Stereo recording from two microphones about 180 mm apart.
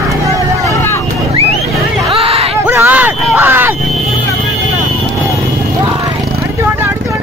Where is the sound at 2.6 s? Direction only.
10° right (ahead or behind).